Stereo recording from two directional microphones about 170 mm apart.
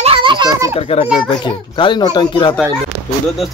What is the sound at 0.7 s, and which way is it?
A child's voice, 35° left (ahead or behind).